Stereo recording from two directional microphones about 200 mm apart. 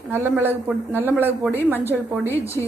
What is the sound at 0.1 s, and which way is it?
Speech, 10° right (ahead or behind).